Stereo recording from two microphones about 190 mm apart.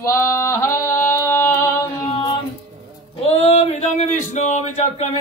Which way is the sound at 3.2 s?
30° left (ahead or behind).